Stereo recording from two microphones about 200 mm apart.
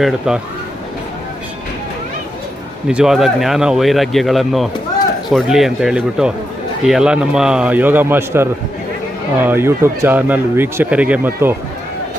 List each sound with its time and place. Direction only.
0.3 s speech: 5° right (ahead or behind)
2.8 s speech: 5° right (ahead or behind)